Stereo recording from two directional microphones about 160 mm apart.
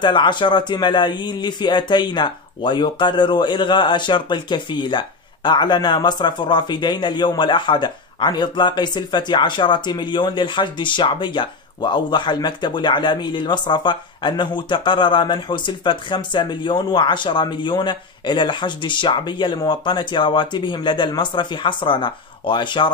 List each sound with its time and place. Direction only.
0.0 s speech: 30° left (ahead or behind)